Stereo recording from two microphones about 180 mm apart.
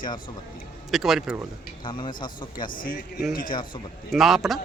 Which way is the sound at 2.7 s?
50° left (ahead or behind).